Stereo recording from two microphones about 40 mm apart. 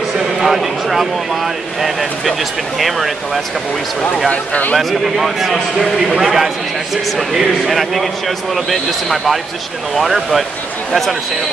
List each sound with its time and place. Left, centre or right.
0.2 s speech: centre
4.3 s speech: left
4.7 s a man's voice: centre